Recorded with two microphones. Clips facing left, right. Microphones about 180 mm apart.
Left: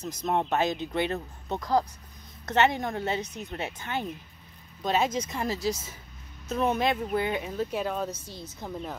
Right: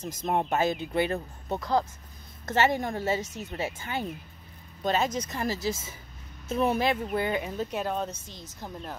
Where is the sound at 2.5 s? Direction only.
5° right (ahead or behind).